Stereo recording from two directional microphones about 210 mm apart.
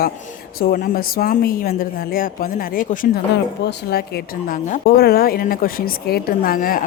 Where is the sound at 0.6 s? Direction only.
45° left (ahead or behind).